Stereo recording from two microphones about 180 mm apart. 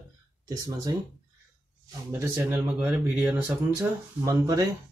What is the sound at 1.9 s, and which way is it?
Speech, 15° right (ahead or behind).